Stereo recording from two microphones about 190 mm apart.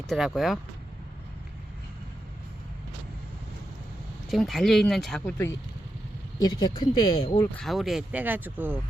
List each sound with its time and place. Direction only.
0.1 s speech: centre (ahead or behind)
4.3 s speech: centre (ahead or behind)
5.2 s speech: 15° left (ahead or behind)
7.6 s speech: centre (ahead or behind)